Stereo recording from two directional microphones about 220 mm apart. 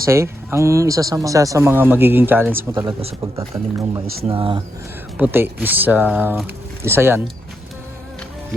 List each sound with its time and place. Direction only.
0.0 s speech: 10° right (ahead or behind)
2.8 s speech: 25° right (ahead or behind)
3.2 s speech: 15° right (ahead or behind)
5.1 s speech: 10° right (ahead or behind)